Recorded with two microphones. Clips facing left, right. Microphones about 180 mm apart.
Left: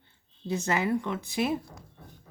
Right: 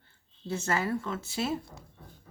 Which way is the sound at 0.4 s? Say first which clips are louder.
Left 3 dB; 15° left (ahead or behind).